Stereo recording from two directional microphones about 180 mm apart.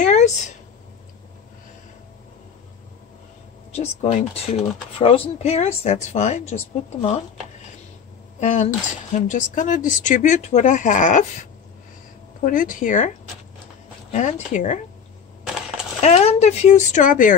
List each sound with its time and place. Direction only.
0.0 s a sound: 40° left (ahead or behind)
3.7 s a woman's voice: 40° left (ahead or behind)
8.4 s speech: 45° left (ahead or behind)
12.4 s speech: 50° left (ahead or behind)
14.1 s speech: 45° left (ahead or behind)
15.4 s coin: 5° right (ahead or behind)
16.0 s a woman's voice: 40° left (ahead or behind)